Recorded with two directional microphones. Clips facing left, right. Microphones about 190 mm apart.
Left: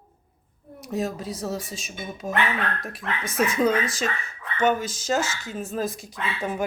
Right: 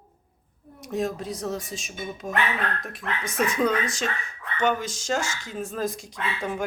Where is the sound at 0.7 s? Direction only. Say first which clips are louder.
Even; 5° left (ahead or behind).